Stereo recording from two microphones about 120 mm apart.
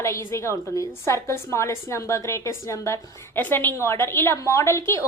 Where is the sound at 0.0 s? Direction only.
25° left (ahead or behind).